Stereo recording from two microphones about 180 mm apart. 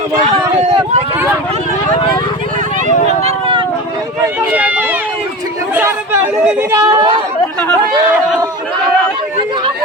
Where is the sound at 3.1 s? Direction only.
35° right (ahead or behind).